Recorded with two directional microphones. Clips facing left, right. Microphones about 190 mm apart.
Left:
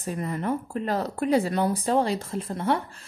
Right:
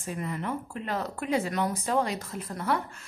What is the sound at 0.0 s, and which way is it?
A woman's voice, 40° left (ahead or behind).